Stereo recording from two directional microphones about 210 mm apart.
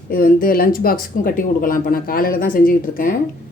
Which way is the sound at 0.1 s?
45° left (ahead or behind).